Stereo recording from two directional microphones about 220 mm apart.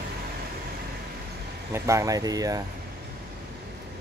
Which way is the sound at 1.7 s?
15° right (ahead or behind).